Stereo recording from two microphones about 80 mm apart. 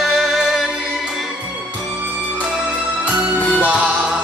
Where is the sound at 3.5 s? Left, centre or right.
Centre.